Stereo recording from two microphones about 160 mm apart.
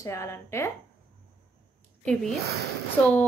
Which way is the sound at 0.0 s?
20° left (ahead or behind).